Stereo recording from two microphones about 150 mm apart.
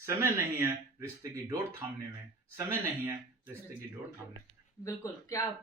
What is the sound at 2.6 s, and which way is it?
Speech, 15° right (ahead or behind).